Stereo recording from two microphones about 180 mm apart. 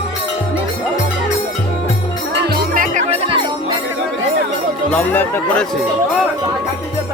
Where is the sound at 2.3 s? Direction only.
70° right (ahead or behind).